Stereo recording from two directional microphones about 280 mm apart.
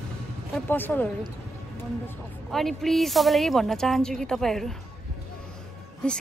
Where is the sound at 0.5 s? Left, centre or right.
Centre.